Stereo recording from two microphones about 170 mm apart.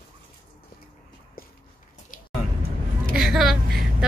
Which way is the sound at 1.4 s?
60° left (ahead or behind).